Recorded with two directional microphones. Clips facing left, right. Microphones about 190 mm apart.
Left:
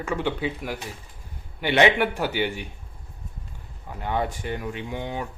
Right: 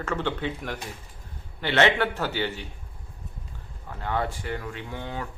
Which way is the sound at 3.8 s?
15° left (ahead or behind).